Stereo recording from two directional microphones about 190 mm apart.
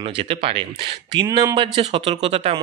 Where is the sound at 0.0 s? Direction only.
25° right (ahead or behind).